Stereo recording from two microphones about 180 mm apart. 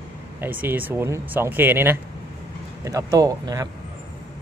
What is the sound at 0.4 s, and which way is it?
Speech, 10° right (ahead or behind).